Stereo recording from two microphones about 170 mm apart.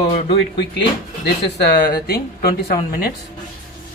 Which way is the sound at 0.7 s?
75° left (ahead or behind).